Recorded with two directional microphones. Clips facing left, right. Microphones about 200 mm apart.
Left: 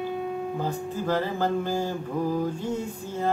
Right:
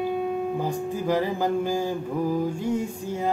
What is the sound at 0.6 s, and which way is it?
Mantra, 15° right (ahead or behind).